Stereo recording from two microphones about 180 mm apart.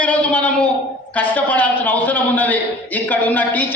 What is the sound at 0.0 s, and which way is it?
A man's voice, 5° left (ahead or behind).